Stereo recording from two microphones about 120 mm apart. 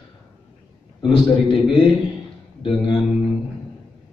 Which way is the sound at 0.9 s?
45° left (ahead or behind).